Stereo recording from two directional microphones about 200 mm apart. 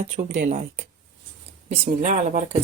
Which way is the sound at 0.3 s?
40° right (ahead or behind).